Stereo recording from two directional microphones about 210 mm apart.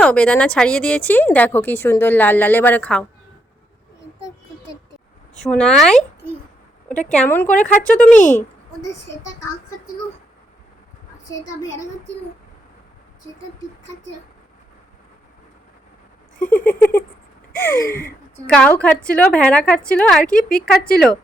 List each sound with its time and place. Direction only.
0.0 s speech: 5° left (ahead or behind)
5.5 s a woman's voice: 5° left (ahead or behind)
7.5 s speech: 35° left (ahead or behind)
8.4 s speech: 15° left (ahead or behind)
16.6 s a woman's voice: 10° left (ahead or behind)